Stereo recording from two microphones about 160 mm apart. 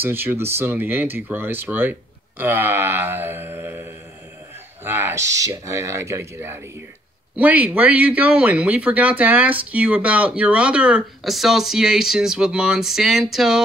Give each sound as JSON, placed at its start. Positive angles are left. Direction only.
{"t": 0.0, "sound": "speech", "side_deg": -15}
{"t": 4.8, "sound": "speech", "side_deg": -15}